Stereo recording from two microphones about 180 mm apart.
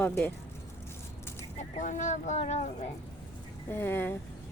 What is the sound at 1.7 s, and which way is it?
Speech, 40° left (ahead or behind).